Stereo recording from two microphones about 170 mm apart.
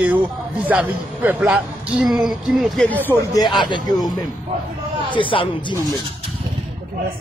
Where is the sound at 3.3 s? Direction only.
25° left (ahead or behind).